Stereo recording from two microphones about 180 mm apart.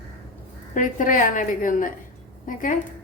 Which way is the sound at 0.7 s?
45° left (ahead or behind).